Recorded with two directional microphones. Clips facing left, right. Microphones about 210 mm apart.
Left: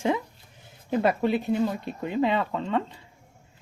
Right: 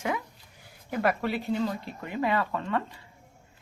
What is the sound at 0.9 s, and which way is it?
Speech, 25° left (ahead or behind).